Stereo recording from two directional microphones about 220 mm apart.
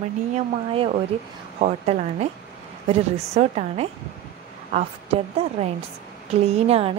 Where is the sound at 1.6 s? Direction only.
30° right (ahead or behind).